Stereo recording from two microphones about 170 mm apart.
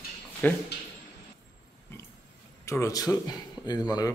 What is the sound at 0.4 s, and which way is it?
Speech, 10° left (ahead or behind).